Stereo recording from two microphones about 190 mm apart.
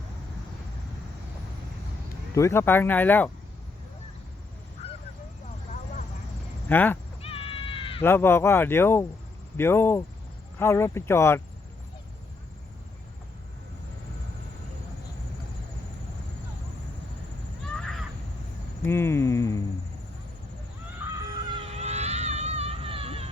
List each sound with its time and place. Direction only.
2.3 s speech: 15° left (ahead or behind)
6.7 s speech: 10° left (ahead or behind)
7.2 s cat: 30° left (ahead or behind)
8.0 s speech: 10° left (ahead or behind)
17.7 s a sound: 5° left (ahead or behind)
21.3 s a sound: 30° right (ahead or behind)